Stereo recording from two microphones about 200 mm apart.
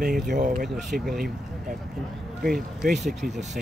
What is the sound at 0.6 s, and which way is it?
Speech, centre (ahead or behind).